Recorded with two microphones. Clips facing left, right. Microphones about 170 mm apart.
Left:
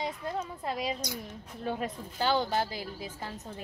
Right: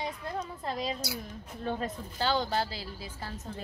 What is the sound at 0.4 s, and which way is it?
Speech, 10° left (ahead or behind).